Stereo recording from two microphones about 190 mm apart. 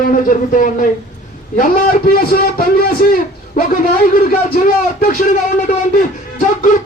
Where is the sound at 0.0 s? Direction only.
45° left (ahead or behind).